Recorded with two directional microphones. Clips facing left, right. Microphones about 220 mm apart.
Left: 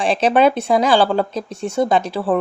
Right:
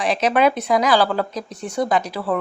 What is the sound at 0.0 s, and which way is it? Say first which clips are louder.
Speech: left 3 dB; 30° left (ahead or behind).